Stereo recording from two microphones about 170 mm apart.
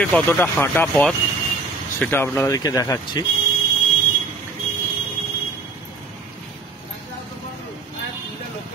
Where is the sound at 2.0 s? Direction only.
15° left (ahead or behind).